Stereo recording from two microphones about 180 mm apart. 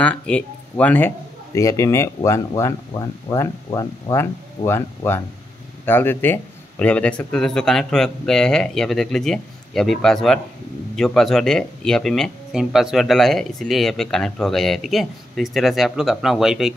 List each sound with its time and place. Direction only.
0.0 s speech: 5° left (ahead or behind)